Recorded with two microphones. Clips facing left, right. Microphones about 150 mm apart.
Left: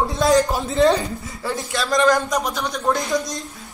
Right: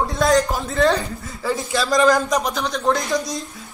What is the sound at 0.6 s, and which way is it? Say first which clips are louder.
Speech: left 2 dB; 25° left (ahead or behind).